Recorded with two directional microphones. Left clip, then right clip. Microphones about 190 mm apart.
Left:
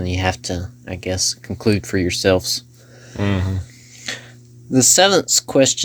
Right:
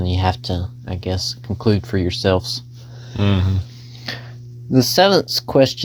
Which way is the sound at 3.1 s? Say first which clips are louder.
Right 1 dB; 20° right (ahead or behind).